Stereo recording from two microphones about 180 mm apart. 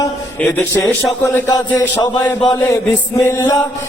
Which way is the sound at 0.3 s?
10° left (ahead or behind).